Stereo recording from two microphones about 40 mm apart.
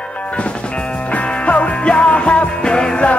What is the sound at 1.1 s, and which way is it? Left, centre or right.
Music, left.